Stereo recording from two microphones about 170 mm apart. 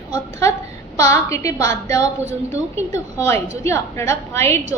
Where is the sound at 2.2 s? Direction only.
40° right (ahead or behind).